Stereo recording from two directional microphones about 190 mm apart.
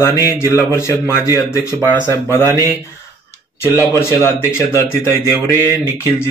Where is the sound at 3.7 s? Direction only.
15° left (ahead or behind).